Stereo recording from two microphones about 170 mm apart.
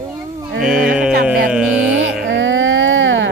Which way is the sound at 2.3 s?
90° right.